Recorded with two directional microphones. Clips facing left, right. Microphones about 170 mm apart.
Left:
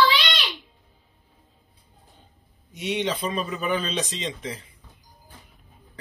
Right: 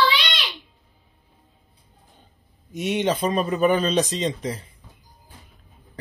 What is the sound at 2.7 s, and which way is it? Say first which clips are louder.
Speech: right 4 dB; 50° right (ahead or behind).